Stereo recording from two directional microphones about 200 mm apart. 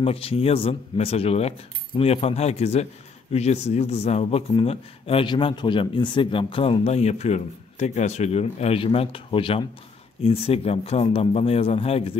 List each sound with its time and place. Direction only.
0.0 s a man's voice: 30° left (ahead or behind)